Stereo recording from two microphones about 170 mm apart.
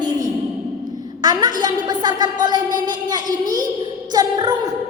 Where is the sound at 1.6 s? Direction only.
25° right (ahead or behind).